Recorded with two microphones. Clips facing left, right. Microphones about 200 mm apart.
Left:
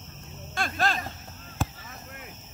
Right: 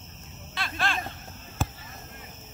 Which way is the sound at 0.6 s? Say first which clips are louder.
Left 3 dB; 45° left (ahead or behind).